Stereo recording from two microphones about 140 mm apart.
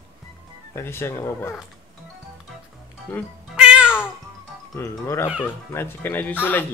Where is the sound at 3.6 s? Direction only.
5° right (ahead or behind).